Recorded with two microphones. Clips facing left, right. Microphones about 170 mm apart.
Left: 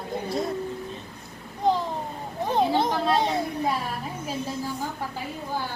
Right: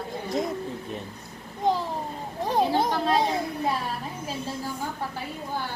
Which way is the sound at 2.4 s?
Centre (ahead or behind).